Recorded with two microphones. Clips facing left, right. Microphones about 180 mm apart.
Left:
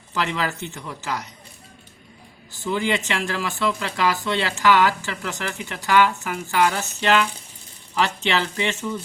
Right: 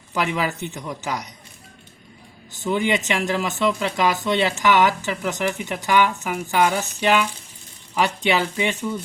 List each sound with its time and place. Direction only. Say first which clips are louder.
0.1 s speech: right 2 dB; 15° right (ahead or behind)
2.5 s speech: right 2 dB; 20° right (ahead or behind)